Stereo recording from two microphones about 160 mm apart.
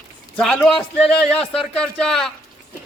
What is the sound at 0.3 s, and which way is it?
A man's voice, centre (ahead or behind).